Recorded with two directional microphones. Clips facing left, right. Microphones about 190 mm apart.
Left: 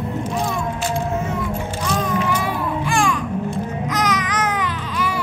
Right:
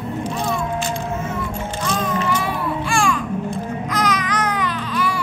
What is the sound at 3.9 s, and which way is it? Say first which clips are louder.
Baby cry: right 1 dB; 20° left (ahead or behind).